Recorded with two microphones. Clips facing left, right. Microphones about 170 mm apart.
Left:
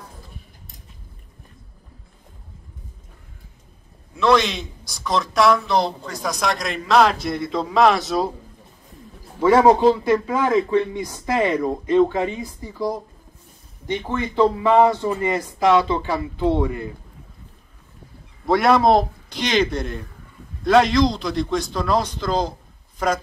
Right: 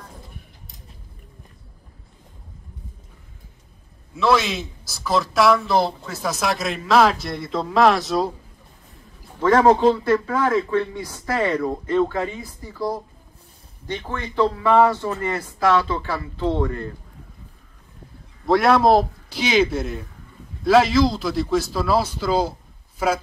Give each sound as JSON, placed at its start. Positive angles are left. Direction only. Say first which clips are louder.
{"t": 4.1, "sound": "a man's voice", "louder": "left 2 dB", "side_deg": -5}
{"t": 9.4, "sound": "a man's voice", "louder": "left 1 dB", "side_deg": 10}
{"t": 18.4, "sound": "a man's voice", "louder": "even", "side_deg": 0}